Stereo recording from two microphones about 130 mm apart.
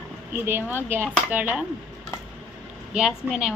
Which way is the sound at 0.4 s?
15° right (ahead or behind).